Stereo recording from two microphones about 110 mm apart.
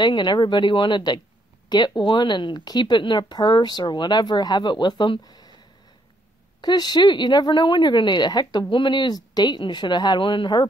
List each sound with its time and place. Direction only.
0.0 s speech: 45° left (ahead or behind)
6.6 s speech: 40° left (ahead or behind)